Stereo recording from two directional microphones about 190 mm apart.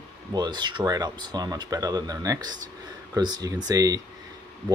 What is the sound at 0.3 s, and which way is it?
Speech, 20° right (ahead or behind).